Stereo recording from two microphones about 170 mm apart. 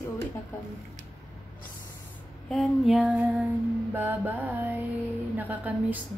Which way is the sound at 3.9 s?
10° right (ahead or behind).